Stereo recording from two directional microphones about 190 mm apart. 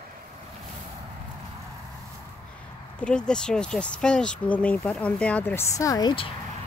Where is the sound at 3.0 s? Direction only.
5° left (ahead or behind); by 6.2 s 20° left (ahead or behind).